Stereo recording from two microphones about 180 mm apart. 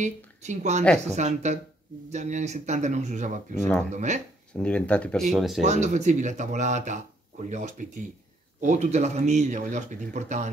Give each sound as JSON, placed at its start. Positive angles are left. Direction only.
{"t": 0.0, "sound": "speech", "side_deg": -40}
{"t": 4.6, "sound": "speech", "side_deg": 5}
{"t": 5.6, "sound": "speech", "side_deg": -40}